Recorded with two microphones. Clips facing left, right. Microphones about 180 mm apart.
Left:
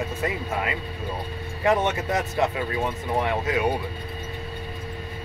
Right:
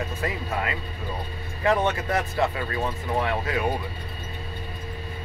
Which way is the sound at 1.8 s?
20° left (ahead or behind).